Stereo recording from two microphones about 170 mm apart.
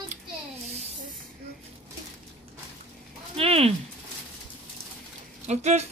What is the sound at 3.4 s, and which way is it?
Speech, 35° right (ahead or behind).